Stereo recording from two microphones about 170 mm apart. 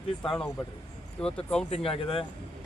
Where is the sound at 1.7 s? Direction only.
35° left (ahead or behind).